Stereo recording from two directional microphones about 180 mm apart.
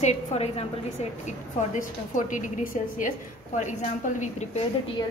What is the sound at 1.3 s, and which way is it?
A woman's voice, 45° left (ahead or behind).